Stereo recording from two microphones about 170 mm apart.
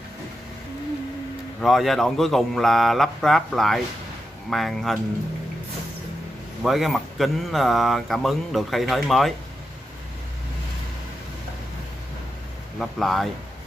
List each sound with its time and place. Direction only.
1.6 s speech: centre (ahead or behind)
6.6 s speech: centre (ahead or behind)
12.7 s speech: centre (ahead or behind)